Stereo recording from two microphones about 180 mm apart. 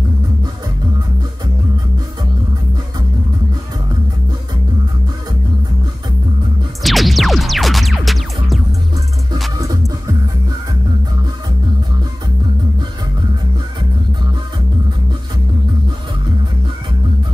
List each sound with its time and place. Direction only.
6.8 s music: centre (ahead or behind)
9.6 s music: 20° right (ahead or behind)